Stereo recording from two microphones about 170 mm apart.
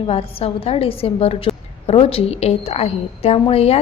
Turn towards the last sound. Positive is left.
turn(degrees=35)  # may be behind; listen again after turning